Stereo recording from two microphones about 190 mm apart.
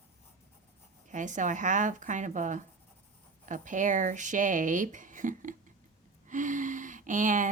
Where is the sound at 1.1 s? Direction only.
40° right (ahead or behind).